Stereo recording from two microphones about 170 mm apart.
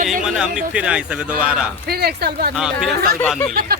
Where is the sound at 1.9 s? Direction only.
65° right (ahead or behind).